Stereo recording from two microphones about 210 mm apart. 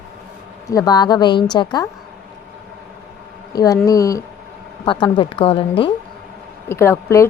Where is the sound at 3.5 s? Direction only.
15° left (ahead or behind).